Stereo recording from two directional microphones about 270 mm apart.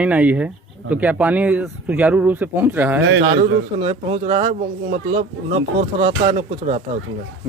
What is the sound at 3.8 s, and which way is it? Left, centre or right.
Speech, right.